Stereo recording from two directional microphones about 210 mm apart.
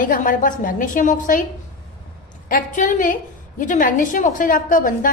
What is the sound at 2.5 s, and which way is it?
A woman's voice, 40° left (ahead or behind).